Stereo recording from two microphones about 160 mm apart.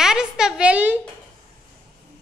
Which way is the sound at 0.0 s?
5° right (ahead or behind).